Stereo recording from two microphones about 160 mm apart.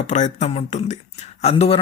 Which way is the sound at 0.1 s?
45° left (ahead or behind).